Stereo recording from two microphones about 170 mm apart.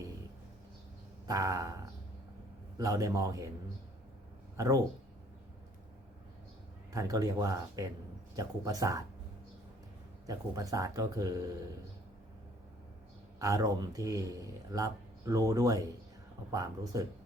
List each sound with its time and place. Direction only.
1.3 s speech: 20° right (ahead or behind)
4.5 s speech: 20° right (ahead or behind)
6.9 s speech: 20° right (ahead or behind)
10.2 s speech: 20° right (ahead or behind)
13.4 s speech: 20° right (ahead or behind)